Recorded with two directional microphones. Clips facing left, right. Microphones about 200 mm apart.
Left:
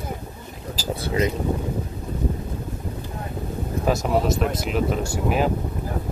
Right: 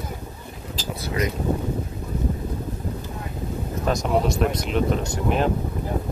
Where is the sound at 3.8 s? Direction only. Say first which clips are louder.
Left 1 dB; centre (ahead or behind).